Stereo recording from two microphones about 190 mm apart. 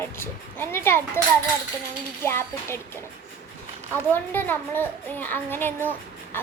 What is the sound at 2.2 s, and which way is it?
Speech, 15° left (ahead or behind).